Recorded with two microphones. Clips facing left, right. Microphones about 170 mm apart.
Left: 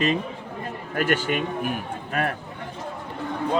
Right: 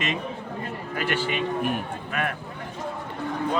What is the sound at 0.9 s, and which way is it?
A man's voice, 45° left (ahead or behind).